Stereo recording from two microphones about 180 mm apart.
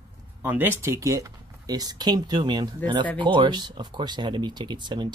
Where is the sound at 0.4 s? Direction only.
10° right (ahead or behind).